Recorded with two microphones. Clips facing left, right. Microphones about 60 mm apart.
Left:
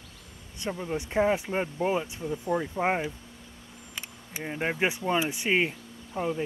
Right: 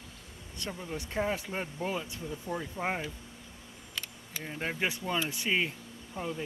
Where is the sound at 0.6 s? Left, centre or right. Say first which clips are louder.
Left 7 dB; left.